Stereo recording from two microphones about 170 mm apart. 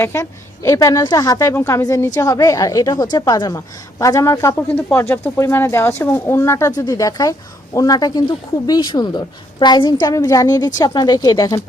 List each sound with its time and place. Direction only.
0.0 s a woman's voice: 15° left (ahead or behind)